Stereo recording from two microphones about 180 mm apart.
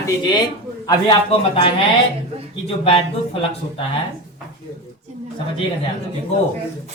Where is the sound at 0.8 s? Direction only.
25° left (ahead or behind).